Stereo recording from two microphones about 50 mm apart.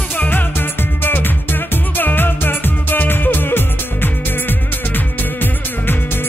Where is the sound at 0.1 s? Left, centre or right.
Left.